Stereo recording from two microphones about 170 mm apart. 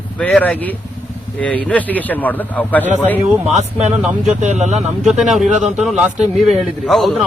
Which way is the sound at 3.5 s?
45° right (ahead or behind).